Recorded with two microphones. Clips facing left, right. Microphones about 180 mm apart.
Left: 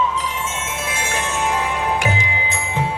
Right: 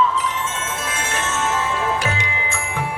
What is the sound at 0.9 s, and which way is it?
Music, 10° left (ahead or behind).